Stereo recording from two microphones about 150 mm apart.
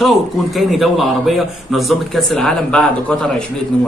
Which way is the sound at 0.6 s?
Centre (ahead or behind).